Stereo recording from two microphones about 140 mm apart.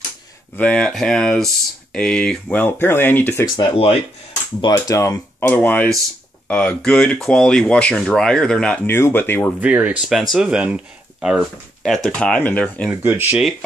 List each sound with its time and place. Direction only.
0.6 s speech: 10° left (ahead or behind)
4.6 s speech: 25° left (ahead or behind)
9.6 s speech: 10° right (ahead or behind); by 12.9 s 10° left (ahead or behind)
13.0 s speech: 15° right (ahead or behind)
13.4 s speech: centre (ahead or behind)